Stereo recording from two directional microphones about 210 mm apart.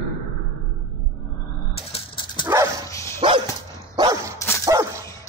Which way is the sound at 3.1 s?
25° right (ahead or behind).